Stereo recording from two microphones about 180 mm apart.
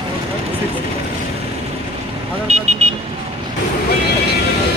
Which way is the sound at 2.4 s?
40° right (ahead or behind).